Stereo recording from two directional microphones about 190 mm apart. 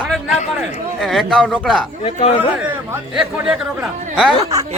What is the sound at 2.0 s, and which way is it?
Speech, 30° left (ahead or behind).